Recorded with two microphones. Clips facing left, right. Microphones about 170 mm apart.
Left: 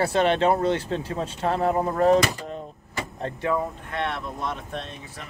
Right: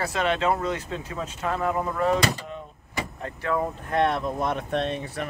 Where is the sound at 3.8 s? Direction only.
45° right (ahead or behind); by 5.2 s 65° right (ahead or behind).